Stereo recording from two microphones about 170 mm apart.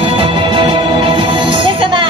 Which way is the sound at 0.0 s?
30° right (ahead or behind).